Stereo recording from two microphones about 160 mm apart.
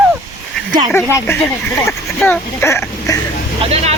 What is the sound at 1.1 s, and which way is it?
Speech, 15° left (ahead or behind).